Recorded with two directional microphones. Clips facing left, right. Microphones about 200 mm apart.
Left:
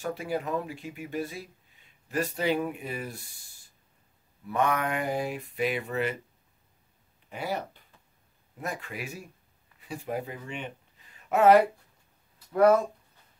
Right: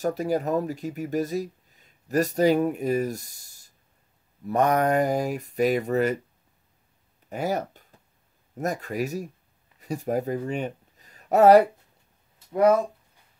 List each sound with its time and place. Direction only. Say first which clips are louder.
0.0 s speech: right 6 dB; 40° right (ahead or behind)
4.5 s mantra: right 6 dB; 40° right (ahead or behind)
7.2 s speech: right 6 dB; 45° right (ahead or behind)
8.5 s mantra: right 9 dB; 40° right (ahead or behind)
9.8 s speech: right 7 dB; 40° right (ahead or behind)